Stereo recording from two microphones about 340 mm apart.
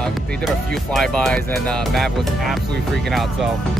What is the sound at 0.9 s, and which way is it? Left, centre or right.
Speech, centre.